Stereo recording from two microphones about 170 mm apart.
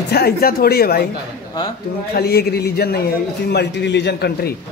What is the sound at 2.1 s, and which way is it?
Speech, 65° left (ahead or behind).